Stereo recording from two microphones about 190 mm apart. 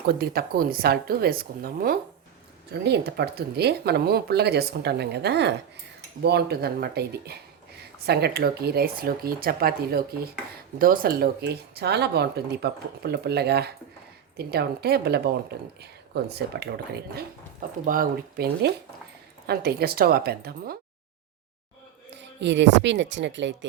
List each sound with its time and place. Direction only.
0.1 s a woman's voice: 55° right (ahead or behind)
17.8 s a woman's voice: 45° right (ahead or behind)
22.1 s a woman's voice: 70° right (ahead or behind)